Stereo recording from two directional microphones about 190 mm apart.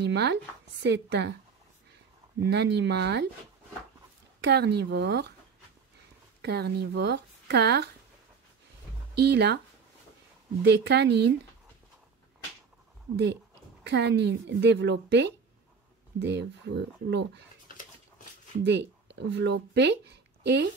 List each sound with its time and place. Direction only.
0.0 s speech: 60° right (ahead or behind)
2.4 s speech: 60° right (ahead or behind)
4.4 s speech: 60° right (ahead or behind)
6.4 s speech: 60° right (ahead or behind)
9.2 s speech: 60° right (ahead or behind)
10.6 s speech: 60° right (ahead or behind)
13.1 s speech: 65° right (ahead or behind)
18.6 s speech: 65° right (ahead or behind)